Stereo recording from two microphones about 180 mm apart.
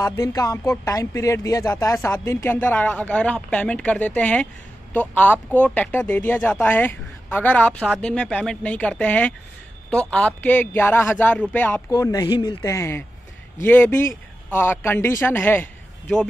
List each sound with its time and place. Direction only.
0.0 s speech: 15° left (ahead or behind)